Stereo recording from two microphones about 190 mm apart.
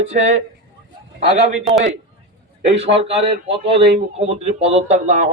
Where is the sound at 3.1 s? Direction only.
30° right (ahead or behind).